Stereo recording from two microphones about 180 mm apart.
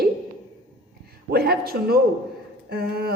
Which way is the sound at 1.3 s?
60° right (ahead or behind).